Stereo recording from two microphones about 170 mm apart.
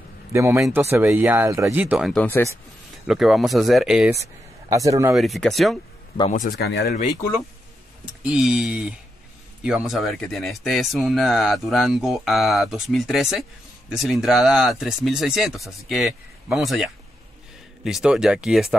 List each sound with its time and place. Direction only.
0.3 s speech: 15° right (ahead or behind)
2.1 s speech: 10° left (ahead or behind)
3.1 s speech: centre (ahead or behind)
4.1 s speech: 20° right (ahead or behind)
5.1 s speech: centre (ahead or behind)
6.3 s speech: 60° left (ahead or behind); by 7.0 s 75° left (ahead or behind)
8.0 s speech: 5° right (ahead or behind)